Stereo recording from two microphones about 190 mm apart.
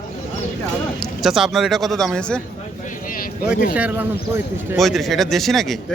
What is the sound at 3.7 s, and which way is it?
Speech, 10° right (ahead or behind).